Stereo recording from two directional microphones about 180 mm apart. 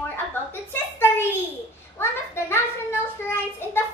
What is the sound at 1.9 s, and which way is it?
Speech, 15° left (ahead or behind).